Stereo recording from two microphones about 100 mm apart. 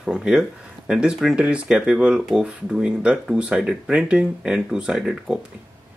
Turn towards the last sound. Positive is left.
turn(degrees=-5)  # may be behind; listen again after turning